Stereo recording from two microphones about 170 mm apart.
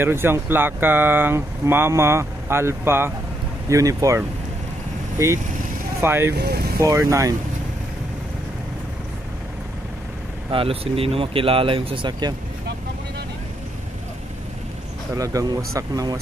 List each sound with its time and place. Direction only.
0.0 s speech: 15° right (ahead or behind)
5.9 s speech: 15° right (ahead or behind)
6.3 s speech: 70° right (ahead or behind)
6.8 s speech: 20° right (ahead or behind)
10.5 s speech: 35° right (ahead or behind)
15.1 s speech: 20° right (ahead or behind)